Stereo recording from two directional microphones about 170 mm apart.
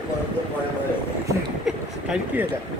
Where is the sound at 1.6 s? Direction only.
5° right (ahead or behind).